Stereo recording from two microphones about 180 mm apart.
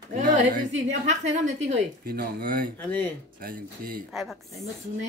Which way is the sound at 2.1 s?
50° right (ahead or behind).